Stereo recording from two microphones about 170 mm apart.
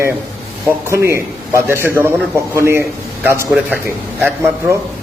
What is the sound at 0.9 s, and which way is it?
A man's voice, 15° right (ahead or behind).